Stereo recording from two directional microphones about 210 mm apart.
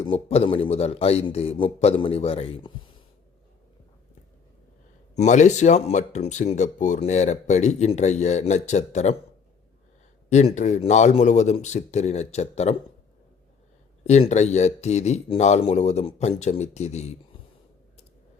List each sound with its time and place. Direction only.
0.0 s a man's voice: 25° left (ahead or behind)
5.1 s speech: 35° left (ahead or behind)
10.2 s speech: 35° left (ahead or behind)
14.0 s speech: 30° left (ahead or behind)